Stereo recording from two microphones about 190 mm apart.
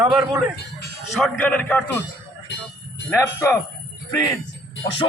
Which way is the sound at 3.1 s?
15° left (ahead or behind).